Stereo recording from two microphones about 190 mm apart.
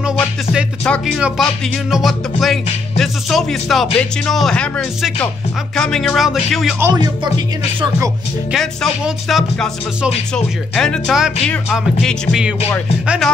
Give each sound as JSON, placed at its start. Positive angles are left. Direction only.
{"t": 0.0, "sound": "music", "side_deg": -5}
{"t": 4.0, "sound": "speech", "side_deg": 0}
{"t": 6.8, "sound": "speech", "side_deg": -20}
{"t": 8.5, "sound": "speech", "side_deg": 0}